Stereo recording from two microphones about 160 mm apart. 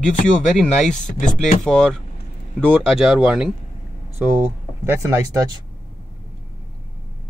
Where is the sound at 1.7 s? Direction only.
5° left (ahead or behind); by 5.6 s 20° right (ahead or behind).